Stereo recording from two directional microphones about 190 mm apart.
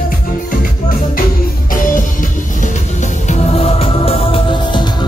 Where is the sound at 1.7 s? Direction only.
45° left (ahead or behind).